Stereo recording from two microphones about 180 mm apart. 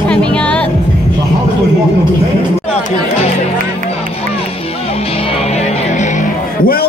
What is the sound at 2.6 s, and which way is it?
Chatter, 35° left (ahead or behind).